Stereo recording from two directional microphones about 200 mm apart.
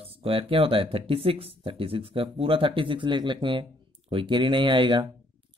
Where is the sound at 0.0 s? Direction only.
30° right (ahead or behind).